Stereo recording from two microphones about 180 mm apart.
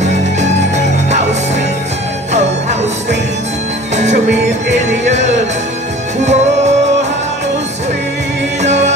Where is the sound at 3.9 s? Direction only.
40° right (ahead or behind).